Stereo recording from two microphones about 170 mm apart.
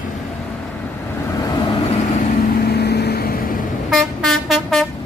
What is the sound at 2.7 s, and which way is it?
Vehicle, 70° left (ahead or behind).